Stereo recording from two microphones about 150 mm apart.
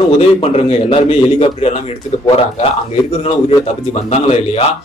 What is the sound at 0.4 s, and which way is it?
A man's voice, 45° left (ahead or behind).